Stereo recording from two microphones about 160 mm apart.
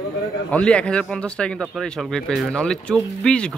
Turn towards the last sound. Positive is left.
turn(degrees=5)  # may be behind; listen again after turning